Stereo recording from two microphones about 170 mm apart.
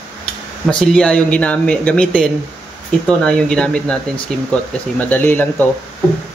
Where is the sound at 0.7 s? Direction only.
5° left (ahead or behind).